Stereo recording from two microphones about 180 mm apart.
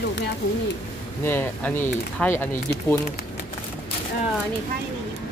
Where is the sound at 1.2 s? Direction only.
10° left (ahead or behind).